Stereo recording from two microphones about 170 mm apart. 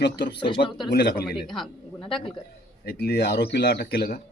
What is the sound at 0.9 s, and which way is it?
Speech, 75° left (ahead or behind).